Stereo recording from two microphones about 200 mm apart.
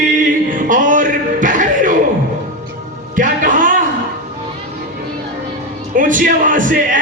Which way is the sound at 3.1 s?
40° right (ahead or behind).